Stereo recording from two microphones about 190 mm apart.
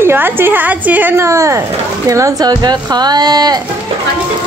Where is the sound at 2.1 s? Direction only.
15° right (ahead or behind).